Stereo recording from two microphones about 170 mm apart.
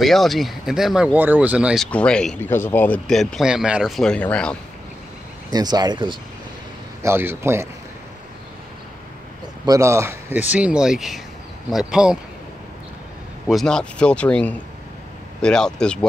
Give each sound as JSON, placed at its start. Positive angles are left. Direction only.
{"t": 0.0, "sound": "speech", "side_deg": 0}
{"t": 1.9, "sound": "speech", "side_deg": 5}
{"t": 5.5, "sound": "speech", "side_deg": -25}
{"t": 7.0, "sound": "speech", "side_deg": -15}
{"t": 9.7, "sound": "speech", "side_deg": -15}
{"t": 13.5, "sound": "speech", "side_deg": 0}